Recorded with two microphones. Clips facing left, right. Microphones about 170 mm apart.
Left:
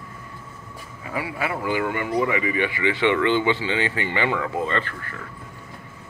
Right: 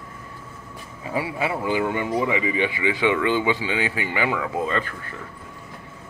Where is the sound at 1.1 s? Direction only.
25° right (ahead or behind).